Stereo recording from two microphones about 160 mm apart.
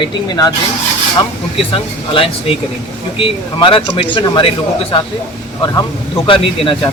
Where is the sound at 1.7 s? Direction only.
35° left (ahead or behind).